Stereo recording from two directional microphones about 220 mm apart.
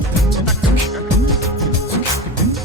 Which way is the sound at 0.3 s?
Centre (ahead or behind).